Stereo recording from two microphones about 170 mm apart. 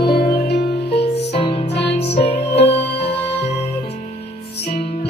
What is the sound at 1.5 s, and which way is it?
Music, 35° left (ahead or behind).